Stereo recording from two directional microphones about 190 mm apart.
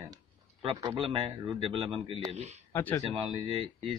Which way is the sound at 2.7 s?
10° left (ahead or behind).